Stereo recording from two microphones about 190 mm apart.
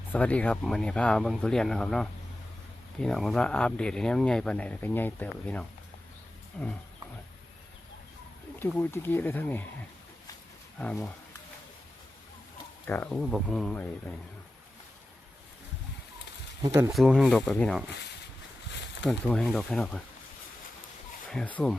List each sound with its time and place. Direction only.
0.1 s speech: 5° left (ahead or behind)
8.8 s speech: 10° left (ahead or behind)
10.8 s speech: 5° left (ahead or behind)
12.9 s speech: 10° left (ahead or behind)
16.6 s speech: 15° right (ahead or behind)
16.9 s speech: centre (ahead or behind)
19.3 s speech: 5° left (ahead or behind)
21.2 s speech: 5° left (ahead or behind)